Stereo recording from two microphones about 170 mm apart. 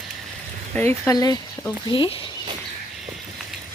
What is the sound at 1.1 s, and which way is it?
Speech, 20° left (ahead or behind).